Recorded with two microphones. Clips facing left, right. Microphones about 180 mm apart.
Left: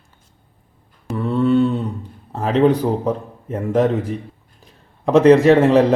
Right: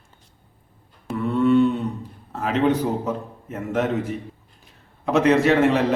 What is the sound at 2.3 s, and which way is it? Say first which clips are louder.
A man's voice: left 5 dB; 35° left (ahead or behind).